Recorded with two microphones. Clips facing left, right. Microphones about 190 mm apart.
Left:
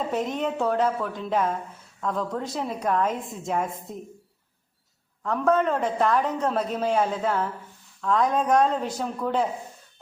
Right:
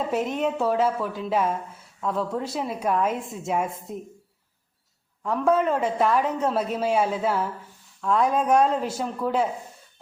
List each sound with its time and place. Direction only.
0.1 s a woman's voice: 5° right (ahead or behind)
5.2 s a man's voice: 10° right (ahead or behind)